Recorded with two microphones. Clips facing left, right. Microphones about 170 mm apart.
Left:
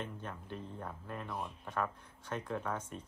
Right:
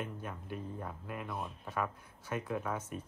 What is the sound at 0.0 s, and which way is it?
Speech, 10° right (ahead or behind).